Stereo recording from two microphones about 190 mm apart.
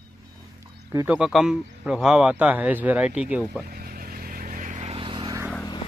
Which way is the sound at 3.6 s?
50° right (ahead or behind).